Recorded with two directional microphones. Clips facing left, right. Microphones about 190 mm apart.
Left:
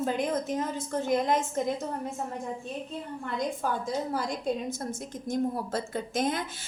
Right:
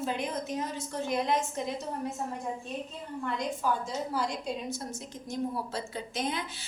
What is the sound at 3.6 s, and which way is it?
Speech, 55° left (ahead or behind).